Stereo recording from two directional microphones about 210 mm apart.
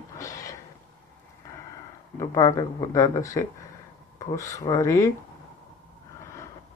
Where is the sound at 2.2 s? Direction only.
15° left (ahead or behind).